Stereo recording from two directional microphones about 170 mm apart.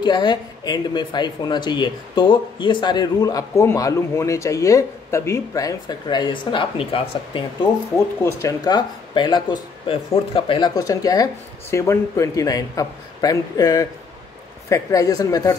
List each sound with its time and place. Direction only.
0.0 s speech: 25° left (ahead or behind)
8.2 s speech: 15° left (ahead or behind)